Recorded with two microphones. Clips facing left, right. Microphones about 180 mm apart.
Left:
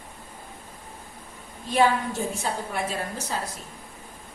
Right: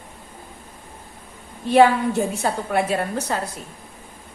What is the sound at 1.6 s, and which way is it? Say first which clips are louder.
A woman's voice: right 7 dB; 65° right (ahead or behind).